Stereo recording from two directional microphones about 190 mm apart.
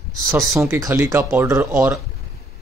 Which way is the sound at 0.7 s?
15° right (ahead or behind).